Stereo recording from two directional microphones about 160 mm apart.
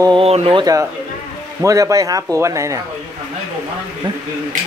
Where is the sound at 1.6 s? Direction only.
20° right (ahead or behind).